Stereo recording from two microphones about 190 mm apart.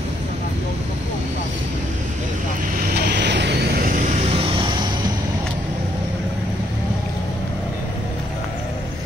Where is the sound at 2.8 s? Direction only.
55° right (ahead or behind); by 5.1 s 25° right (ahead or behind).